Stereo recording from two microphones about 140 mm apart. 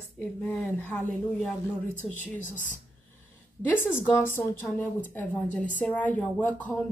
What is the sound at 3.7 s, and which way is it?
A woman's voice, 15° left (ahead or behind).